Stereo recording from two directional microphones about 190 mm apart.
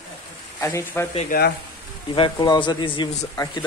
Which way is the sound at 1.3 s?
45° left (ahead or behind).